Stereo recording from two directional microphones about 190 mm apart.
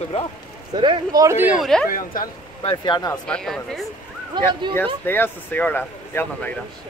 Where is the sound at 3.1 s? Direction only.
5° left (ahead or behind).